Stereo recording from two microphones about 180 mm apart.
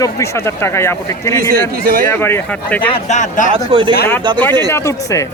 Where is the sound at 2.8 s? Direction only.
35° left (ahead or behind).